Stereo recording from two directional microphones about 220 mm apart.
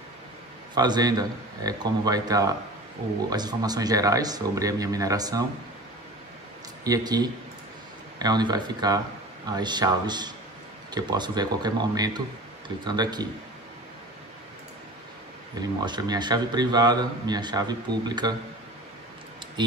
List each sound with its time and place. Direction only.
0.7 s speech: 20° right (ahead or behind)
6.8 s a man's voice: 15° right (ahead or behind)
15.8 s a man's voice: 20° right (ahead or behind)